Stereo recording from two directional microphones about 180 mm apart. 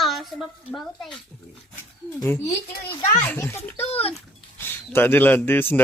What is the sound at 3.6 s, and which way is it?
Speech, 35° left (ahead or behind).